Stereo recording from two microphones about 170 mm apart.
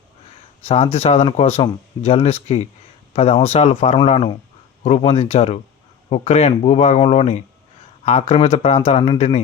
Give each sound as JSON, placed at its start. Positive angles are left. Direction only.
{"t": 0.6, "sound": "speech", "side_deg": 35}